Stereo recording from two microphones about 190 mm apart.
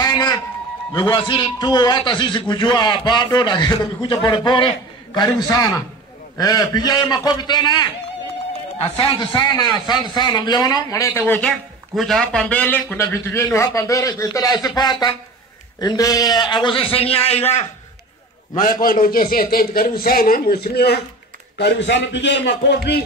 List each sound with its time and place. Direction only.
0.0 s a sound: 20° left (ahead or behind)
0.9 s a man's voice: 20° left (ahead or behind)
9.3 s a man's voice: 20° left (ahead or behind)
18.5 s a man's voice: 45° left (ahead or behind); by 22.8 s 65° left (ahead or behind)